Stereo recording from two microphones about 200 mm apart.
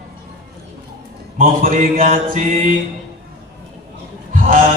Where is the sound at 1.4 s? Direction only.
40° right (ahead or behind).